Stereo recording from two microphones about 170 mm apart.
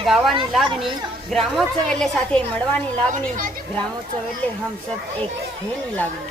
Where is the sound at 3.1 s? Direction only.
55° right (ahead or behind).